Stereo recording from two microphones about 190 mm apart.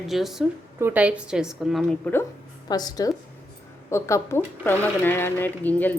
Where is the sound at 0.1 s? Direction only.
Centre (ahead or behind).